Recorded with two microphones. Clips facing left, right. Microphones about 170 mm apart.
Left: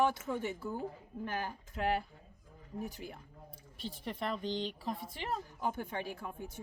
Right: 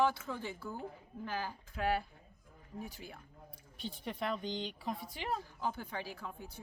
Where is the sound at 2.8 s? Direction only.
45° left (ahead or behind).